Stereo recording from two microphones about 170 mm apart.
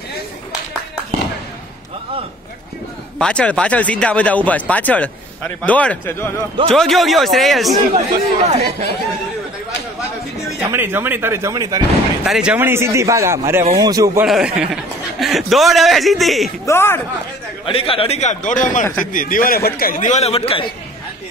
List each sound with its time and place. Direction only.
3.2 s speech: 5° left (ahead or behind)
6.7 s a man's voice: centre (ahead or behind)
7.9 s speech: 40° right (ahead or behind)
10.6 s a man's voice: 15° right (ahead or behind)
12.3 s a man's voice: 5° right (ahead or behind); by 14.2 s 20° right (ahead or behind)
14.2 s a man's voice: 5° right (ahead or behind)
16.6 s speech: 15° left (ahead or behind)
17.6 s a man's voice: 35° left (ahead or behind)